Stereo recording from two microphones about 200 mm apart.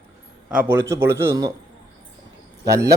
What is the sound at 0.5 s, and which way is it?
A man's voice, 10° right (ahead or behind).